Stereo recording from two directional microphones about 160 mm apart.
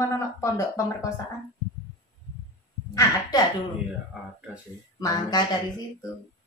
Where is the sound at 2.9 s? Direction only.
25° left (ahead or behind).